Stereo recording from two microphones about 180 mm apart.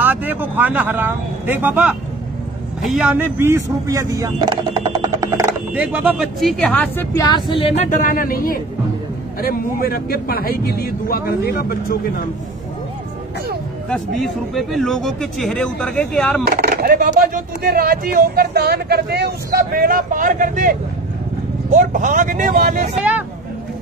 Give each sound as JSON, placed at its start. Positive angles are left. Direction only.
{"t": 0.0, "sound": "speech", "side_deg": -10}
{"t": 7.2, "sound": "speech", "side_deg": 25}
{"t": 13.8, "sound": "speech", "side_deg": 0}
{"t": 16.4, "sound": "speech", "side_deg": -60}
{"t": 21.7, "sound": "speech", "side_deg": -45}